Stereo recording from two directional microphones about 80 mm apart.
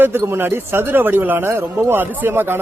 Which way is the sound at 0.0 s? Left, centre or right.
Right.